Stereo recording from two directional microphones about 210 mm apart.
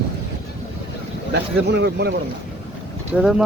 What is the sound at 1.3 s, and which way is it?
Speech, 55° right (ahead or behind).